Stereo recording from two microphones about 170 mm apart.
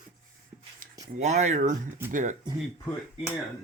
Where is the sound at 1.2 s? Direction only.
45° right (ahead or behind).